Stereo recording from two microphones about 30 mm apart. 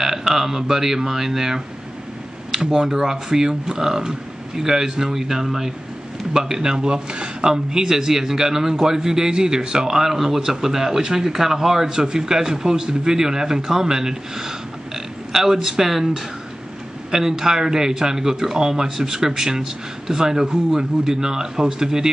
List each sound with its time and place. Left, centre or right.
0.0 s a man's voice: centre
10.1 s speech: centre
17.1 s speech: centre